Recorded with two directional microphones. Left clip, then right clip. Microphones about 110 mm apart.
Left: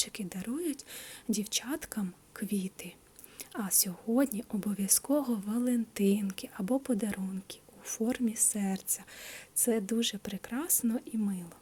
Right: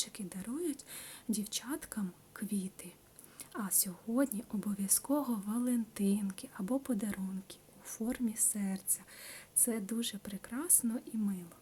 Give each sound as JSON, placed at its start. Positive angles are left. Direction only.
{"t": 0.0, "sound": "a woman's voice", "side_deg": 25}
{"t": 6.0, "sound": "a woman's voice", "side_deg": 25}
{"t": 6.7, "sound": "a woman's voice", "side_deg": 15}